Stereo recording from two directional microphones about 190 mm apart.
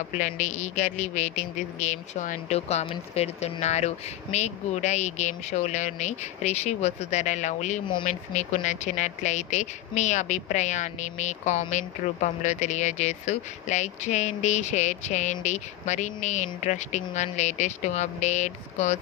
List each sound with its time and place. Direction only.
0.2 s speech: 40° left (ahead or behind)